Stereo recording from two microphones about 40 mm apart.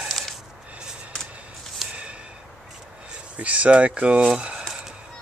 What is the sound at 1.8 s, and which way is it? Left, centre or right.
Snort, centre.